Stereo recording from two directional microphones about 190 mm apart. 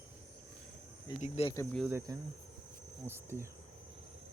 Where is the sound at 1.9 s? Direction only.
15° right (ahead or behind).